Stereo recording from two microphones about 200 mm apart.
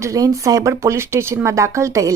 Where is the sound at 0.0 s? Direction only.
15° right (ahead or behind).